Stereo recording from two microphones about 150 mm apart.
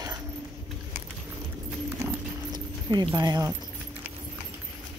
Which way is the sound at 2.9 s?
30° right (ahead or behind).